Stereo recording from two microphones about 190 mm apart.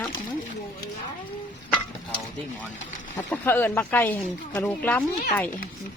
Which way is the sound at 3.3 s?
10° left (ahead or behind).